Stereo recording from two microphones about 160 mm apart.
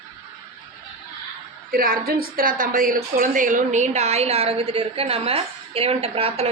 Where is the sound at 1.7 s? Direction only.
65° right (ahead or behind).